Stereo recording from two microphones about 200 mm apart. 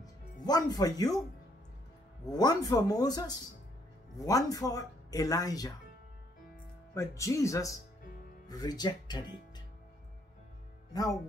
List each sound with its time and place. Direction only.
0.0 s speech: 20° left (ahead or behind)
2.3 s speech: 20° left (ahead or behind)
6.9 s speech: 15° left (ahead or behind)
10.9 s speech: 20° left (ahead or behind)